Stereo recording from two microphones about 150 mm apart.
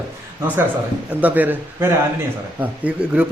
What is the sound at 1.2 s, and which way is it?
Speech, 10° right (ahead or behind).